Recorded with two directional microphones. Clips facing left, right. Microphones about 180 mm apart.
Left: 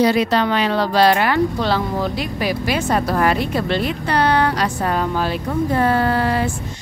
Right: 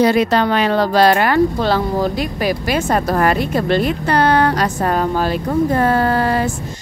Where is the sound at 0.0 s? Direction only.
50° right (ahead or behind).